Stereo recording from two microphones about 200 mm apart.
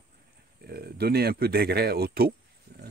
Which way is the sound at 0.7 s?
50° right (ahead or behind).